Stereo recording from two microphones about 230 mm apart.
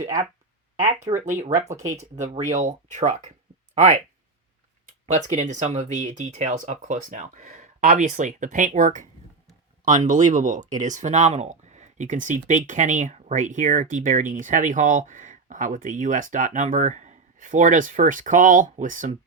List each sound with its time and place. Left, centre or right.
1.7 s speech: centre
2.1 s speech: right
5.1 s speech: right